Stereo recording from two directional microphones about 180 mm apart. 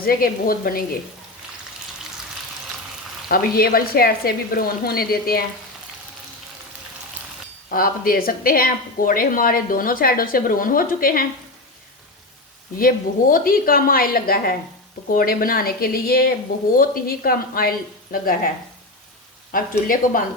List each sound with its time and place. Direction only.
0.0 s speech: 55° left (ahead or behind)
3.2 s speech: 55° left (ahead or behind)
7.7 s speech: 55° left (ahead or behind)
12.7 s speech: 50° left (ahead or behind)
19.5 s speech: 50° left (ahead or behind)